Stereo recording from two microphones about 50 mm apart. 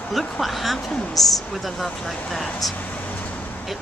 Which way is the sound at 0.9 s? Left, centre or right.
Left.